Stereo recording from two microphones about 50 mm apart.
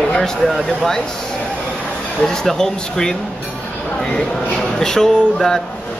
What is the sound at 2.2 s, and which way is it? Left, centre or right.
Speech, centre.